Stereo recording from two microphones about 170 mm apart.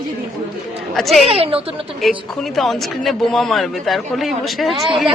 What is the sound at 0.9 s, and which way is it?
Speech, centre (ahead or behind).